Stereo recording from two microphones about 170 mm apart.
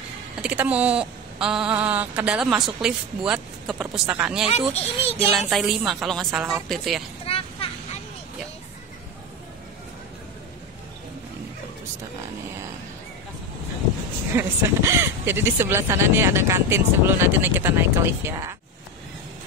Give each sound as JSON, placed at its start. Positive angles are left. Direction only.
{"t": 0.4, "sound": "speech", "side_deg": -5}
{"t": 4.5, "sound": "a child's voice", "side_deg": 40}
{"t": 5.5, "sound": "speech", "side_deg": 0}
{"t": 7.2, "sound": "a sound", "side_deg": 35}
{"t": 14.3, "sound": "speech", "side_deg": -15}